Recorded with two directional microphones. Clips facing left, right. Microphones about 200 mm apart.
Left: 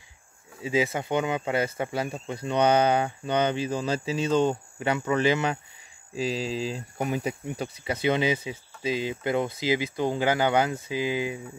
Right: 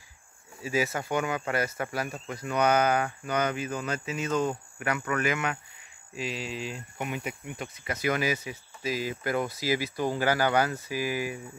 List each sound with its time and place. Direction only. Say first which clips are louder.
0.6 s speech: left 3 dB; 20° left (ahead or behind)